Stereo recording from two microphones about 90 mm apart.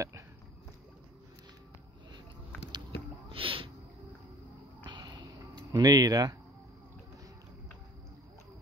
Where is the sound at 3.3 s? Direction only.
85° right.